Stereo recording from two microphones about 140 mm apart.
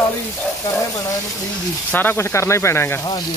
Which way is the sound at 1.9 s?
15° left (ahead or behind).